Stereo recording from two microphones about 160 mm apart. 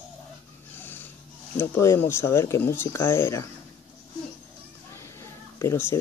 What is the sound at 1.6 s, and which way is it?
Speech, 15° left (ahead or behind).